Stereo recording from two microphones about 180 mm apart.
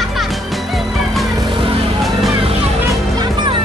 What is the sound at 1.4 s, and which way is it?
Music, 25° right (ahead or behind).